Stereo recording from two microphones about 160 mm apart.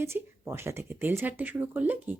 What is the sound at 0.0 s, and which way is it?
A woman's voice, 15° right (ahead or behind).